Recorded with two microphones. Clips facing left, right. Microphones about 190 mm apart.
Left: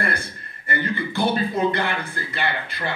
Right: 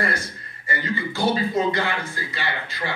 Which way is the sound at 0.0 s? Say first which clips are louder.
Even; 55° left (ahead or behind).